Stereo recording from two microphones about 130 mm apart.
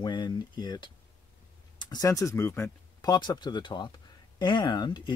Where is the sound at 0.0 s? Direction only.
35° left (ahead or behind).